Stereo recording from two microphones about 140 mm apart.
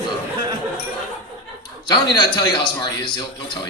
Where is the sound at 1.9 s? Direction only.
30° left (ahead or behind).